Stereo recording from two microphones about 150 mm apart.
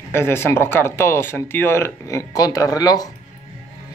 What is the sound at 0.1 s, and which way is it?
Speech, 15° left (ahead or behind).